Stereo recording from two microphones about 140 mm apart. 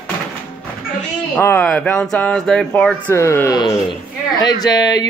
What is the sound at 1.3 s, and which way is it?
Speech, 15° left (ahead or behind).